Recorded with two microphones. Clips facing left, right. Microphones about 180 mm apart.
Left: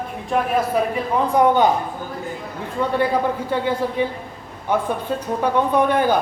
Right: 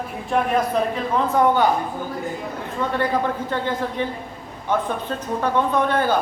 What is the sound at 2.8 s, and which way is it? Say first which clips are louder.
A man's voice: left 3 dB; 10° left (ahead or behind).